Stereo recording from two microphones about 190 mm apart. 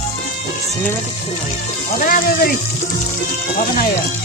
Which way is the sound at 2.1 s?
50° left (ahead or behind).